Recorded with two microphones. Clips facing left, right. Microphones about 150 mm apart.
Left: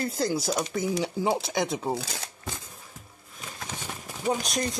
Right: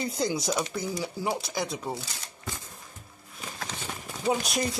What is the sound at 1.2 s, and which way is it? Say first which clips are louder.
Speech: left 3 dB; 25° left (ahead or behind).